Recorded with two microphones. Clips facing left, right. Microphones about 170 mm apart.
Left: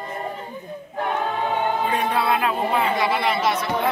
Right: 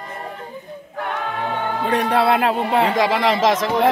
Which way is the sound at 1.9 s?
75° right (ahead or behind).